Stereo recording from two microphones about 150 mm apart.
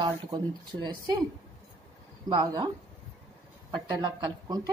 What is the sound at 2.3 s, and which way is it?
Speech, 25° right (ahead or behind).